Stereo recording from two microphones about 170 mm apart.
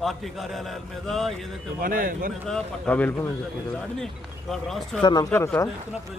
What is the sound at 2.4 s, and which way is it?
A man's voice, 5° left (ahead or behind).